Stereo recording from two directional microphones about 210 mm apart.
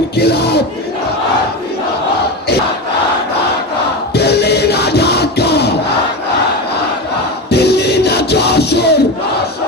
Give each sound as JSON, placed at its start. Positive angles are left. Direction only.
{"t": 0.2, "sound": "speech", "side_deg": 50}
{"t": 4.1, "sound": "music", "side_deg": 50}
{"t": 7.5, "sound": "music", "side_deg": 50}